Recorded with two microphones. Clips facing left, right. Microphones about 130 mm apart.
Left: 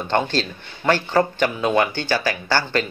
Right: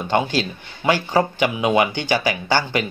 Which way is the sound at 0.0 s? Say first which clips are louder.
Right 1 dB; 10° right (ahead or behind).